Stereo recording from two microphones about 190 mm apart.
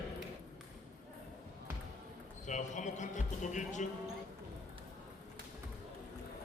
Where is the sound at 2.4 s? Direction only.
40° left (ahead or behind).